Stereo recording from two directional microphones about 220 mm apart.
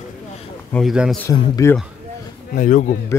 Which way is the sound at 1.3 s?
15° left (ahead or behind).